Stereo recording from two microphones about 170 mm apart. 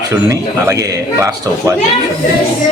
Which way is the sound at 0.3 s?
20° right (ahead or behind).